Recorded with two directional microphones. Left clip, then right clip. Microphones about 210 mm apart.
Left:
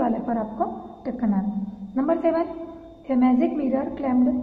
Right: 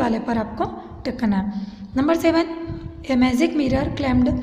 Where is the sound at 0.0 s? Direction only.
60° right (ahead or behind).